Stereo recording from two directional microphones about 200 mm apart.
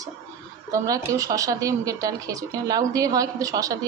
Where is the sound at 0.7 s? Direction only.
15° right (ahead or behind).